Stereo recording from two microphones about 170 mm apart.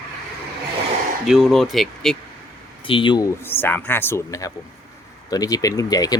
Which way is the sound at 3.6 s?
10° left (ahead or behind).